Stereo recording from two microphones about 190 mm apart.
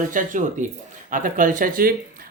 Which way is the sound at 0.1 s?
45° right (ahead or behind).